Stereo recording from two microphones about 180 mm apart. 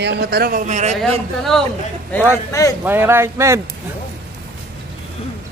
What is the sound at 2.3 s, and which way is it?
Speech, 20° left (ahead or behind).